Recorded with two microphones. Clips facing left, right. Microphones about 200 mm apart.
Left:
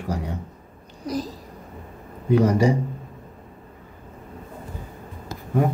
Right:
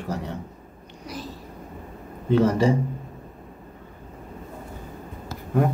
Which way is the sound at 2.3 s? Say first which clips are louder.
Left 1 dB; 15° left (ahead or behind).